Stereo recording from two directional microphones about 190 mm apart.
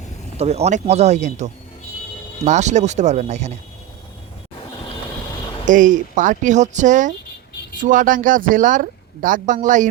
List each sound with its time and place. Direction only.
0.3 s speech: 35° right (ahead or behind)
5.6 s speech: 45° right (ahead or behind)